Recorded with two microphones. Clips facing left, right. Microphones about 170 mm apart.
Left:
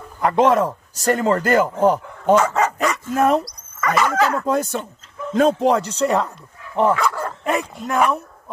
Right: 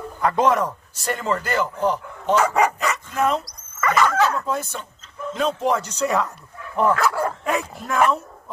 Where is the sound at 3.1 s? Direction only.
45° left (ahead or behind).